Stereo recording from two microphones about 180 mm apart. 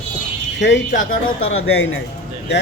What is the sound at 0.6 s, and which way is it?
Speech, 75° left (ahead or behind).